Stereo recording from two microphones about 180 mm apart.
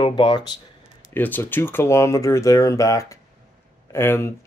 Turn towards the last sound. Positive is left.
turn(degrees=15)  # may be behind; listen again after turning